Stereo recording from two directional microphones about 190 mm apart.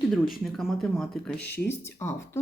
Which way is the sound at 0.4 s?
Centre (ahead or behind).